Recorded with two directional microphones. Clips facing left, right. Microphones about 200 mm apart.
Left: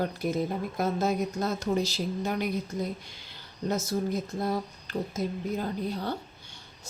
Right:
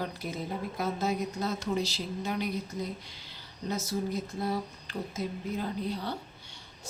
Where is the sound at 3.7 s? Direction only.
45° left (ahead or behind).